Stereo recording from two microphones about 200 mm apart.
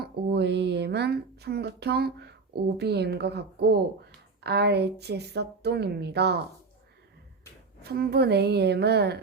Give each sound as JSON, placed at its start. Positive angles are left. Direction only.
{"t": 0.0, "sound": "speech", "side_deg": -55}
{"t": 7.8, "sound": "speech", "side_deg": -50}